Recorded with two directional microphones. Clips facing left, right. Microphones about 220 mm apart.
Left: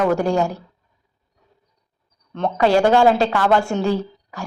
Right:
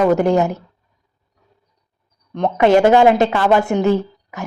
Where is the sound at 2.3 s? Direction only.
15° right (ahead or behind).